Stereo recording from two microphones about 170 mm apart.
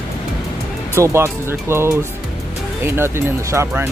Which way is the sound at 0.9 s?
15° right (ahead or behind).